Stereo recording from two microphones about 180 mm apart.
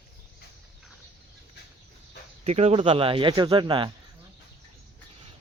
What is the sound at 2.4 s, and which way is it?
Speech, 35° right (ahead or behind).